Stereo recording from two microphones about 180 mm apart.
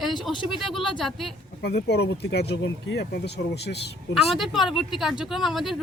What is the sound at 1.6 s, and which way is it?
Speech, 65° left (ahead or behind).